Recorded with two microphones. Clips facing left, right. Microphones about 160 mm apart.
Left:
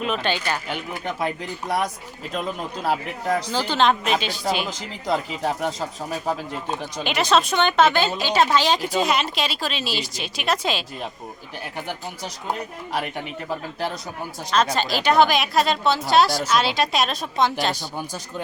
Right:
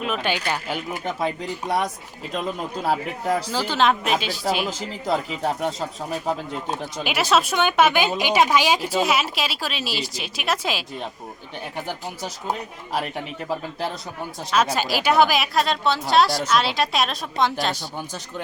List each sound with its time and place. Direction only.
0.0 s speech: 5° right (ahead or behind)